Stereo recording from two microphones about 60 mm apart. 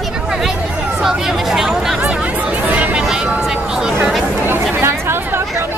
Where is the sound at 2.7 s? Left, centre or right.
Right.